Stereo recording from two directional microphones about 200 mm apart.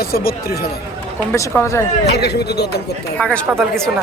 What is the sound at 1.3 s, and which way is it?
Speech, 15° left (ahead or behind).